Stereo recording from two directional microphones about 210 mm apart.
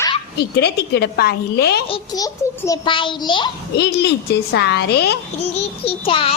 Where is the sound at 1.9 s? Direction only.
15° left (ahead or behind).